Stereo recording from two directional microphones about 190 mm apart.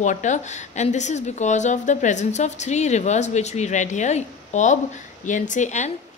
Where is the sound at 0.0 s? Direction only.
40° left (ahead or behind).